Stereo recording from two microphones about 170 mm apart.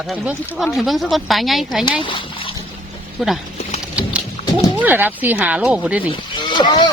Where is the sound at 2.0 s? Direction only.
30° left (ahead or behind).